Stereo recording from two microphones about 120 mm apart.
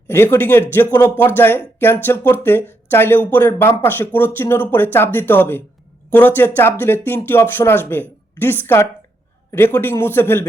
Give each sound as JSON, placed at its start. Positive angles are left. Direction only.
{"t": 0.1, "sound": "speech", "side_deg": 20}